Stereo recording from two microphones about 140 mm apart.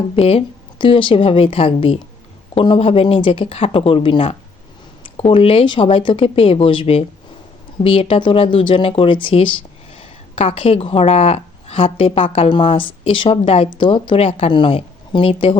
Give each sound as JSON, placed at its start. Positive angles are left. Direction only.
{"t": 0.2, "sound": "a woman's voice", "side_deg": 45}